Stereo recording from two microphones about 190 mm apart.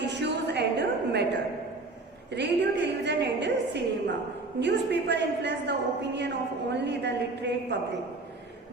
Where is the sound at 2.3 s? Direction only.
65° right (ahead or behind).